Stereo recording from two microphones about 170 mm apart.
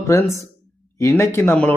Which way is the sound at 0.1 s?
15° left (ahead or behind).